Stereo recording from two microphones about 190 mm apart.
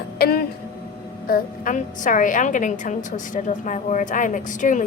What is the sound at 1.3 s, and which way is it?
A woman's voice, 45° left (ahead or behind).